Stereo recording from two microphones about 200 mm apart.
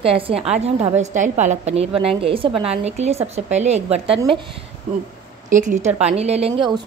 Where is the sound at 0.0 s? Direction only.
30° right (ahead or behind).